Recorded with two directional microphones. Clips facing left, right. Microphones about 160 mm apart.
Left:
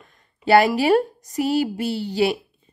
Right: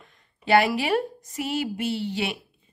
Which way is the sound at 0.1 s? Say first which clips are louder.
Left 4 dB; 40° left (ahead or behind).